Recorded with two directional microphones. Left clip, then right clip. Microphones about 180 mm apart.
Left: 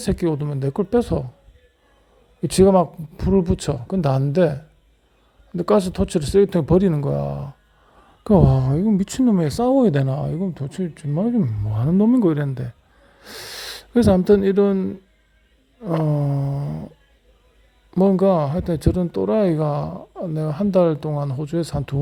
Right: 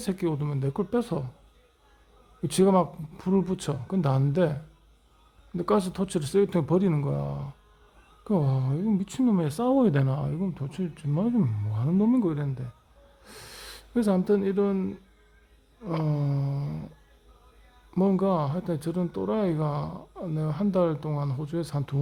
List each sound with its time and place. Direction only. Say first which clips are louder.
0.0 s speech: left 7 dB; 25° left (ahead or behind)
2.4 s speech: left 8 dB; 25° left (ahead or behind)
11.3 s speech: left 5 dB; 15° left (ahead or behind)
11.7 s speech: left 8 dB; 35° left (ahead or behind)
13.2 s a sound: left 11 dB; 35° left (ahead or behind)
14.3 s speech: left 9 dB; 35° left (ahead or behind)
16.0 s speech: left 8 dB; 20° left (ahead or behind)
17.9 s speech: left 9 dB; 25° left (ahead or behind)